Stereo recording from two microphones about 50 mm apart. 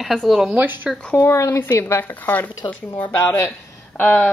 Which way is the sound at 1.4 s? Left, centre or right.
Left.